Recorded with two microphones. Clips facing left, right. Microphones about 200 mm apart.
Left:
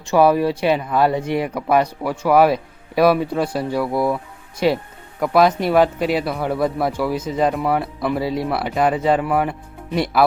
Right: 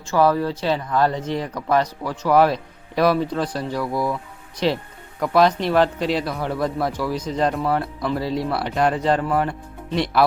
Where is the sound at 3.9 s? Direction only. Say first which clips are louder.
Left 4 dB; 25° left (ahead or behind).